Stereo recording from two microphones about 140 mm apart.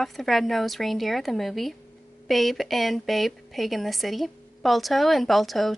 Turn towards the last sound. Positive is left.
turn(degrees=0)  # may be behind; listen again after turning